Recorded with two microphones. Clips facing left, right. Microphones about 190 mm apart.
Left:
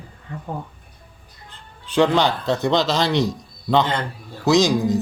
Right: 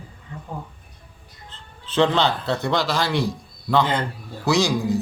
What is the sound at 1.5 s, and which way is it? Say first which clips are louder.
Speech: left 3 dB; 15° left (ahead or behind).